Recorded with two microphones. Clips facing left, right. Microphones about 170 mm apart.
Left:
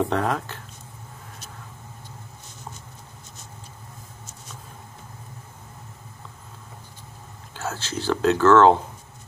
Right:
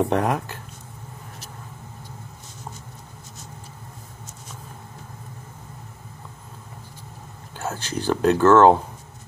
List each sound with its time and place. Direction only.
0.0 s speech: 15° right (ahead or behind)
7.5 s speech: 15° right (ahead or behind)